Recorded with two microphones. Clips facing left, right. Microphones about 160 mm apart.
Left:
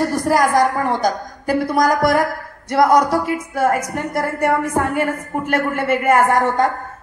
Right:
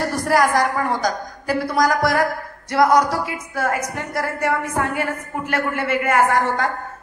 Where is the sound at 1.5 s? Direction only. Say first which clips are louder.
Left 3 dB; 50° left (ahead or behind).